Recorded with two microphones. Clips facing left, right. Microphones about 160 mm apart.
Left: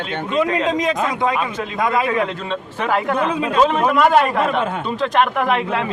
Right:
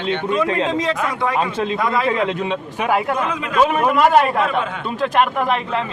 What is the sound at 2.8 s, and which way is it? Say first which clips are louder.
A man's voice: left 1 dB; 10° right (ahead or behind).